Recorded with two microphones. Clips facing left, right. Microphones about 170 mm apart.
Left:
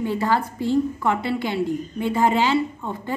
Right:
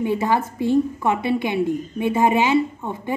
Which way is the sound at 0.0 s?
20° right (ahead or behind).